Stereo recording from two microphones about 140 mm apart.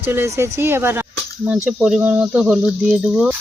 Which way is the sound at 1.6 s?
5° right (ahead or behind).